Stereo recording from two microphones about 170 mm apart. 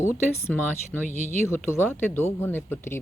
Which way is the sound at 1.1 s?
45° left (ahead or behind).